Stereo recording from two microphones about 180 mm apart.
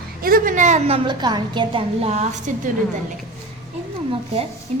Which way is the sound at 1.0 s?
25° right (ahead or behind).